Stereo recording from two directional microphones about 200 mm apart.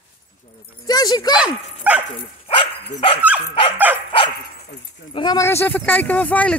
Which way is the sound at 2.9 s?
25° left (ahead or behind).